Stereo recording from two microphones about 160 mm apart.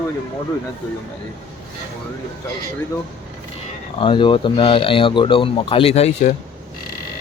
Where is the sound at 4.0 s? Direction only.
30° left (ahead or behind).